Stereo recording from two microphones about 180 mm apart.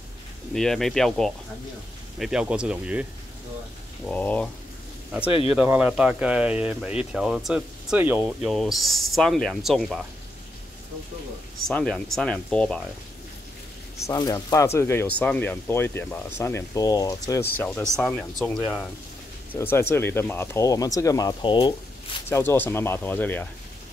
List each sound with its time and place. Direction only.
0.6 s speech: centre (ahead or behind)
4.0 s speech: 10° left (ahead or behind)
5.5 s speech: 5° right (ahead or behind)
11.6 s speech: 5° left (ahead or behind)
14.0 s speech: 20° left (ahead or behind); by 18.9 s 5° right (ahead or behind)
19.5 s speech: 10° left (ahead or behind)
22.3 s speech: 15° left (ahead or behind)